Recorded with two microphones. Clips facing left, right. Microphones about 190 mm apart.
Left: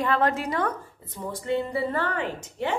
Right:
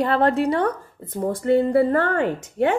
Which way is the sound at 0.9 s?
55° right (ahead or behind).